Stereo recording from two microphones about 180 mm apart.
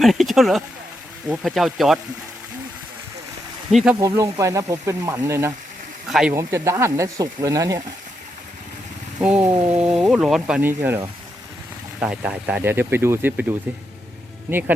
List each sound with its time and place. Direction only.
0.0 s speech: centre (ahead or behind)
3.7 s speech: centre (ahead or behind)
4.0 s speech: 20° right (ahead or behind)
6.1 s speech: 5° right (ahead or behind)
6.3 s speech: 15° right (ahead or behind)
9.2 s speech: 10° right (ahead or behind)